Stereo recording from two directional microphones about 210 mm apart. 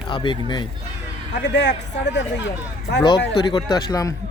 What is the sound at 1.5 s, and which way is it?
Speech, 55° left (ahead or behind).